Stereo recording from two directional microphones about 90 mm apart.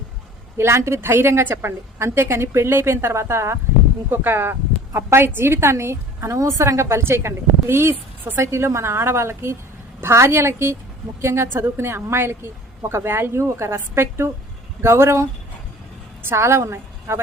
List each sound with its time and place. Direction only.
0.5 s a woman's voice: 30° right (ahead or behind)